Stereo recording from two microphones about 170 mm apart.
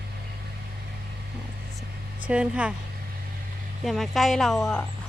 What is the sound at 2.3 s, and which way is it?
Speech, 5° right (ahead or behind).